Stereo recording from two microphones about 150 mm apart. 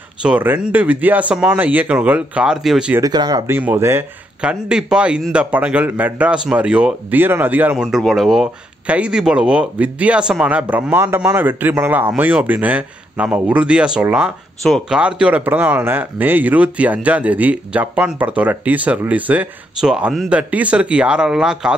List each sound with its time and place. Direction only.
0.2 s a man's voice: 10° right (ahead or behind)
3.0 s speech: 25° right (ahead or behind)
3.5 s a man's voice: 15° right (ahead or behind)
4.4 s a man's voice: 5° right (ahead or behind)
14.6 s speech: centre (ahead or behind)
15.0 s a man's voice: 10° right (ahead or behind)